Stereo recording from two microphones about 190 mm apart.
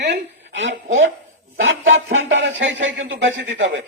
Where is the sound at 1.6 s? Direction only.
85° right.